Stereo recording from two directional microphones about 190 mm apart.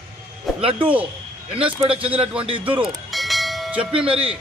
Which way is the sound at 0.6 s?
30° right (ahead or behind).